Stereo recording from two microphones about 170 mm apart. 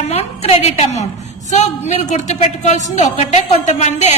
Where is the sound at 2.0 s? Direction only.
45° left (ahead or behind).